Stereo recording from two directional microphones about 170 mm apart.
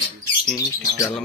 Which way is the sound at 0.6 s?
20° left (ahead or behind).